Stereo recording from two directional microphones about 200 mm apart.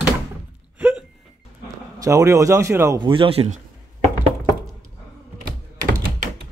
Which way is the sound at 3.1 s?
25° right (ahead or behind).